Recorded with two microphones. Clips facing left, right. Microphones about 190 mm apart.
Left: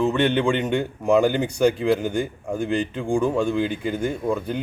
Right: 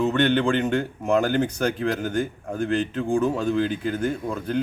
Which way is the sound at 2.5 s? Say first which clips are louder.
Left 1 dB; 10° left (ahead or behind).